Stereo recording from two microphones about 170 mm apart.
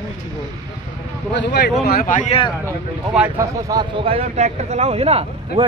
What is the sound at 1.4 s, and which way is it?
Speech, 75° left (ahead or behind).